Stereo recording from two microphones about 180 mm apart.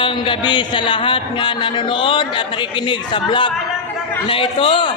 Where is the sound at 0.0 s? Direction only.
25° left (ahead or behind).